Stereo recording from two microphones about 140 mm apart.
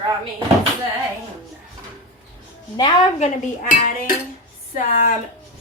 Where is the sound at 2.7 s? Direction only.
35° left (ahead or behind).